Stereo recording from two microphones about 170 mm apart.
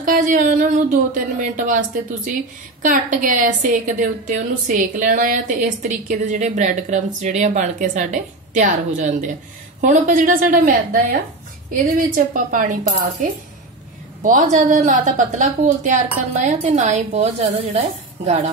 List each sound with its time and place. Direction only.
0.0 s a woman's voice: 55° right (ahead or behind)
14.2 s a woman's voice: 50° right (ahead or behind)